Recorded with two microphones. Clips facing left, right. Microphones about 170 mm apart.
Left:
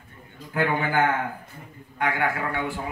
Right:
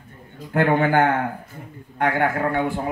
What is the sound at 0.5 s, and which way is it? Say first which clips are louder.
Speech: right 6 dB; 50° right (ahead or behind).